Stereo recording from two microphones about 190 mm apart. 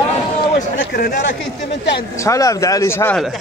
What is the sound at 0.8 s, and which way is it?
Speech, 50° left (ahead or behind).